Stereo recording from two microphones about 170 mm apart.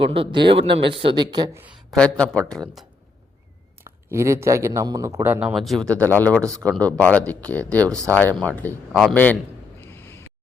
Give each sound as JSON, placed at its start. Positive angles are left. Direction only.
{"t": 0.0, "sound": "speech", "side_deg": -35}
{"t": 1.9, "sound": "speech", "side_deg": 5}
{"t": 4.1, "sound": "speech", "side_deg": -15}
{"t": 9.8, "sound": "a sound", "side_deg": 15}